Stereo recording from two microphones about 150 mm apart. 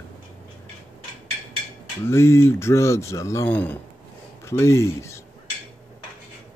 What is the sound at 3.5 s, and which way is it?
Speech, 10° left (ahead or behind).